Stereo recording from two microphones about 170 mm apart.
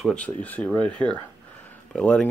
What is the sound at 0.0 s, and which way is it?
Speech, 5° left (ahead or behind).